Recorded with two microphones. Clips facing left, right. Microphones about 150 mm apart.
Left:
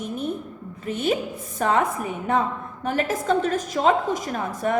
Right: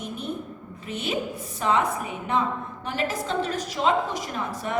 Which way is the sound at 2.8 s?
50° left (ahead or behind).